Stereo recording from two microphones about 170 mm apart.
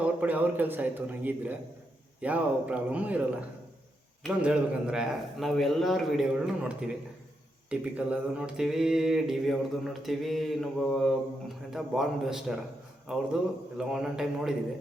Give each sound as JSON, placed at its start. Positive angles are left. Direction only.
{"t": 0.0, "sound": "a man's voice", "side_deg": -10}